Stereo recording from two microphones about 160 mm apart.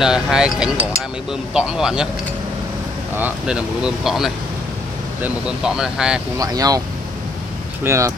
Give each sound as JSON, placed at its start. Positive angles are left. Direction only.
{"t": 0.0, "sound": "speech", "side_deg": -5}
{"t": 3.2, "sound": "speech", "side_deg": -10}
{"t": 6.3, "sound": "speech", "side_deg": -25}
{"t": 7.8, "sound": "speech", "side_deg": -15}